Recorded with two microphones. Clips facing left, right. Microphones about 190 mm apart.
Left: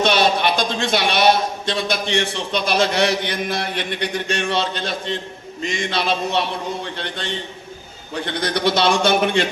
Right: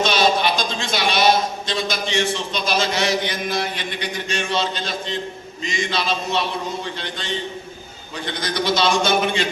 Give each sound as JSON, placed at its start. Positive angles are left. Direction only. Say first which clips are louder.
{"t": 0.0, "sound": "a man's voice", "louder": "left 1 dB", "side_deg": 60}